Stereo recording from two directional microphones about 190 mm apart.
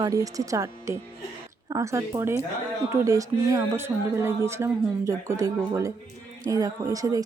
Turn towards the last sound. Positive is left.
turn(degrees=-20)  # may be behind; listen again after turning